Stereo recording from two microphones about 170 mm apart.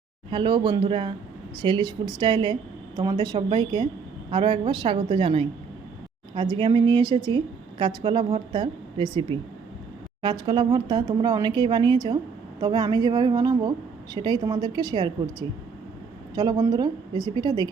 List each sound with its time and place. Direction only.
0.3 s a woman's voice: 30° right (ahead or behind)
16.3 s a woman's voice: 20° right (ahead or behind)